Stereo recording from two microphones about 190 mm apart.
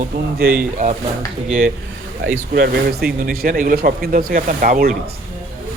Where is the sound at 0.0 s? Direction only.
50° right (ahead or behind).